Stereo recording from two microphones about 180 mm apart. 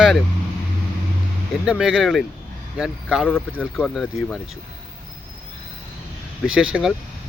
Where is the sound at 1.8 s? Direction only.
Centre (ahead or behind).